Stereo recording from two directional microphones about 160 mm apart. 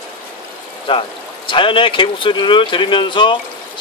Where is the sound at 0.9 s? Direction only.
30° left (ahead or behind).